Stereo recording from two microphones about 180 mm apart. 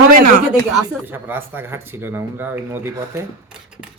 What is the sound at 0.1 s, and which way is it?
Speech, 50° right (ahead or behind).